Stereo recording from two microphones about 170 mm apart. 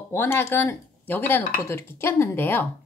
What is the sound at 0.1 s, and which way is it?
Speech, 15° left (ahead or behind).